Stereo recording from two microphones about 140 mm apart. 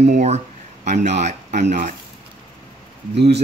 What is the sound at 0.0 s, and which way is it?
Speech, 50° right (ahead or behind).